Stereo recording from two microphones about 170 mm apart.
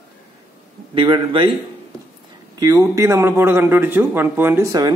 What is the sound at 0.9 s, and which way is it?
Speech, 30° right (ahead or behind).